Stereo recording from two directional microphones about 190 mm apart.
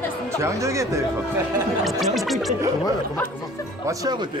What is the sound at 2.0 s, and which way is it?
Music, centre (ahead or behind).